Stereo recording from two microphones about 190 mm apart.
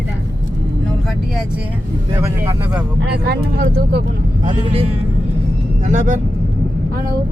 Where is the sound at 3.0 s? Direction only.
55° right (ahead or behind).